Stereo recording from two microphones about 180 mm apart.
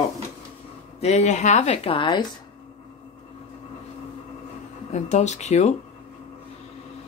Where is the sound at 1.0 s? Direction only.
40° left (ahead or behind).